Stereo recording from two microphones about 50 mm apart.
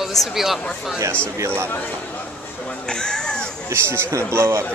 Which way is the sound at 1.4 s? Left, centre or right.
Right.